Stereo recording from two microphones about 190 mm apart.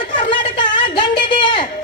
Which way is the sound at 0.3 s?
25° left (ahead or behind).